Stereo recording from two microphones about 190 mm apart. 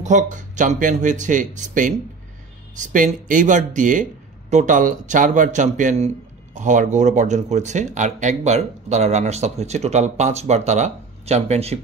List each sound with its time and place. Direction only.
0.0 s speech: 40° right (ahead or behind)